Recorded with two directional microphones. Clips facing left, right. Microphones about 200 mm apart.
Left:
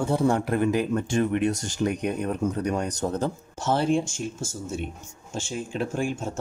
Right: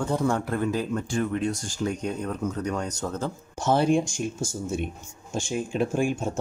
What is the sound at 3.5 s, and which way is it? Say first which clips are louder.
Speech: right 3 dB; 15° right (ahead or behind).